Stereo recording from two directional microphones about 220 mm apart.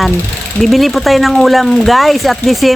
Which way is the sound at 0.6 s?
Centre (ahead or behind).